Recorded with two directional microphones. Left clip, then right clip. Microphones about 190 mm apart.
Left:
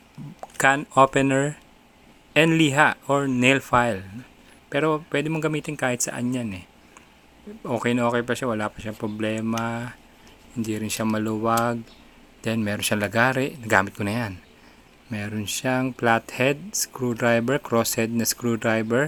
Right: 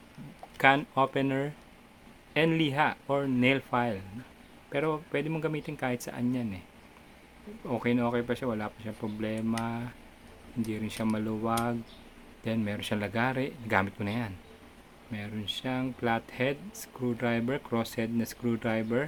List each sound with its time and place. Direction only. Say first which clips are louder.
0.5 s speech: left 5 dB; 30° left (ahead or behind)
7.6 s speech: left 7 dB; 25° left (ahead or behind)
13.0 s speech: left 9 dB; 30° left (ahead or behind)
15.1 s speech: left 6 dB; 40° left (ahead or behind)